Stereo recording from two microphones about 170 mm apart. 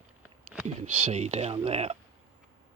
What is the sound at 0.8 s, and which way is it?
Speech, 40° right (ahead or behind).